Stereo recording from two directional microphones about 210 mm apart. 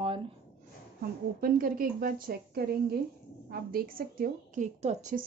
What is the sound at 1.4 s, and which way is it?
A woman's voice, 45° right (ahead or behind).